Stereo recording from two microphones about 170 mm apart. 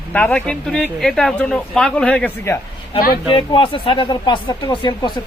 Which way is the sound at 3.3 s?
30° left (ahead or behind).